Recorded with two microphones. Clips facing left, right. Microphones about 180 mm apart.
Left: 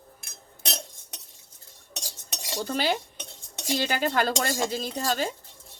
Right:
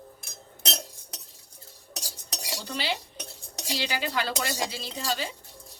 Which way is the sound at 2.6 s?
50° left (ahead or behind).